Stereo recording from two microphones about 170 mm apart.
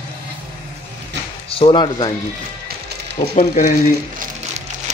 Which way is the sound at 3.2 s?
25° left (ahead or behind).